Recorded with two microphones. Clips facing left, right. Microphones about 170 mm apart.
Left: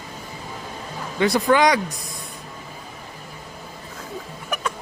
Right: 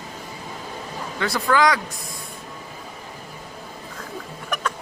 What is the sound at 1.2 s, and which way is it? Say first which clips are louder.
Speech: left 3 dB; 20° left (ahead or behind).